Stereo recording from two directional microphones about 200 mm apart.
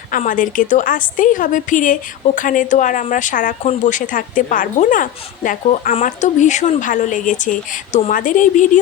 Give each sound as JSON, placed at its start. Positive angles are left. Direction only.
{"t": 0.1, "sound": "speech", "side_deg": 40}